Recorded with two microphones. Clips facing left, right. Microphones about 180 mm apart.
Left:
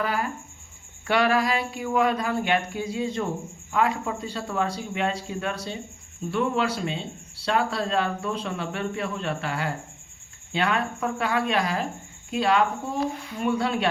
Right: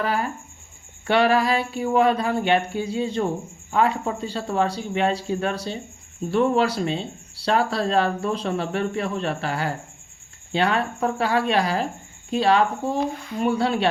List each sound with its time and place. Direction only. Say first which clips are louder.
0.0 s speech: right 2 dB; 30° right (ahead or behind)